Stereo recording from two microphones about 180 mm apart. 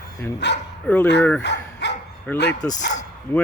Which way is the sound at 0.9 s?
5° left (ahead or behind).